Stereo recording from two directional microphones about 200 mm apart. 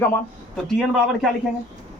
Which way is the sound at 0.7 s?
Centre (ahead or behind).